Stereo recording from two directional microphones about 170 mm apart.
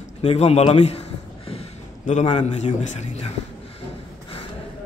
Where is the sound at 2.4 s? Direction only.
40° left (ahead or behind).